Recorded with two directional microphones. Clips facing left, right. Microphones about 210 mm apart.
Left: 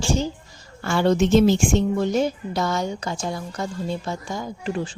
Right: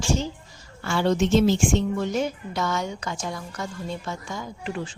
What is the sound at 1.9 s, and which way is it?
A woman's voice, 35° left (ahead or behind).